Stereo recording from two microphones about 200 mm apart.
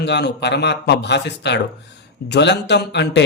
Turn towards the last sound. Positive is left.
turn(degrees=60)  # may be behind; listen again after turning